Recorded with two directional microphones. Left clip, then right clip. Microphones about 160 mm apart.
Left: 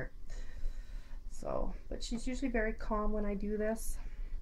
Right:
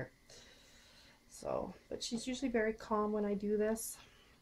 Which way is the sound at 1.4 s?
25° right (ahead or behind).